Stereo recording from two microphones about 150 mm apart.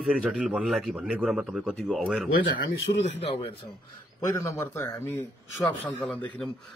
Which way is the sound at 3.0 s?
40° left (ahead or behind).